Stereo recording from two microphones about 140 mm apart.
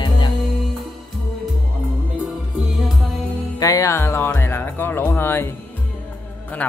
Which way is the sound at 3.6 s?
25° left (ahead or behind).